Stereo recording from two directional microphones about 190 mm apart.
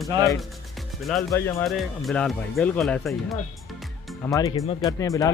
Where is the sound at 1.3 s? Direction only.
15° left (ahead or behind).